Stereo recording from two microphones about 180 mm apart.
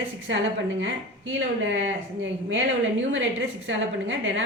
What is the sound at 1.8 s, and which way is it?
Speech, 90° right.